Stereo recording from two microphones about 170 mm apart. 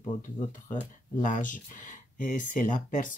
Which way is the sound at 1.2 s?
50° left (ahead or behind).